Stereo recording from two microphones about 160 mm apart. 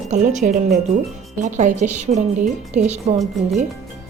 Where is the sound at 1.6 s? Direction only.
50° right (ahead or behind).